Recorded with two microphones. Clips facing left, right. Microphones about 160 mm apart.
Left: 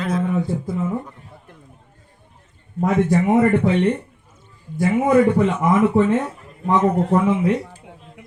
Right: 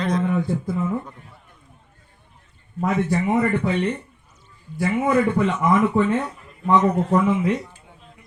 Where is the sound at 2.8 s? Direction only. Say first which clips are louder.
Left 4 dB; 40° left (ahead or behind).